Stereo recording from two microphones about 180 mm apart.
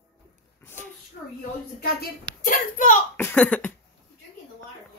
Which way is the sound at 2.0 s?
50° left (ahead or behind).